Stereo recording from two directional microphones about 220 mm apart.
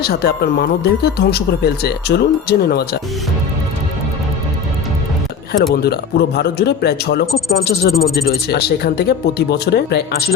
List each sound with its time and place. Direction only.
0.0 s speech: 45° left (ahead or behind)
5.7 s speech: 45° left (ahead or behind)